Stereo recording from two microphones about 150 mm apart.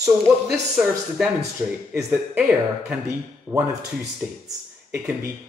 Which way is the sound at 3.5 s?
15° right (ahead or behind).